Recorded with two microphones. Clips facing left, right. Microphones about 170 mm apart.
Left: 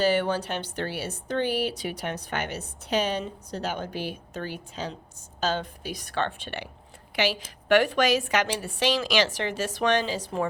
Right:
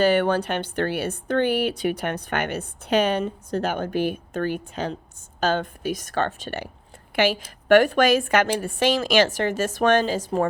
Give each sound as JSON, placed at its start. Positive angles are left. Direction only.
{"t": 0.0, "sound": "a woman's voice", "side_deg": -60}